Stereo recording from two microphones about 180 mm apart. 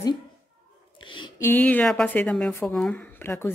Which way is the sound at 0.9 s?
25° left (ahead or behind).